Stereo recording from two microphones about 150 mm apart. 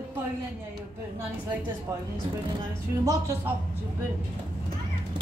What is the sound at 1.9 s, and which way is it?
Speech, 20° right (ahead or behind).